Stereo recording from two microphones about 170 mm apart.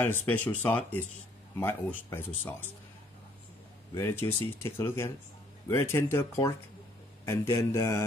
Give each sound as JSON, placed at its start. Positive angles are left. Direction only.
{"t": 0.0, "sound": "speech", "side_deg": 10}
{"t": 3.9, "sound": "speech", "side_deg": 15}